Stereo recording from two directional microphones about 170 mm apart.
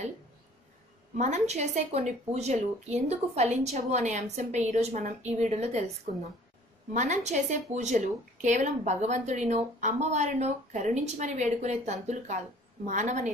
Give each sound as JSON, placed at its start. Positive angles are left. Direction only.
{"t": 1.1, "sound": "a woman's voice", "side_deg": -45}
{"t": 6.9, "sound": "a woman's voice", "side_deg": -45}